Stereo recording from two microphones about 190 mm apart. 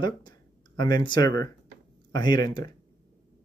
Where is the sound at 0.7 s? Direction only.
20° left (ahead or behind).